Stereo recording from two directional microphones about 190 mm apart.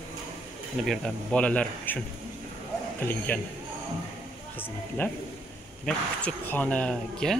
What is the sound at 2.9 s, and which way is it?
Speech, 10° left (ahead or behind).